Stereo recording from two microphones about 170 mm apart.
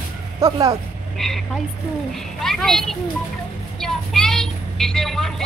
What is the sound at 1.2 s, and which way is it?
Speech, centre (ahead or behind).